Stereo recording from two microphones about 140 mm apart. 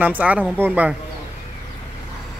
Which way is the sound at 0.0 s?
10° right (ahead or behind).